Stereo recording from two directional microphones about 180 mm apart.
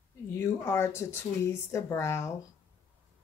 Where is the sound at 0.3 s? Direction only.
15° left (ahead or behind).